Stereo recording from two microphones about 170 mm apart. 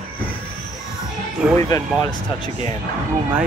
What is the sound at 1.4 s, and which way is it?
Speech, 5° right (ahead or behind).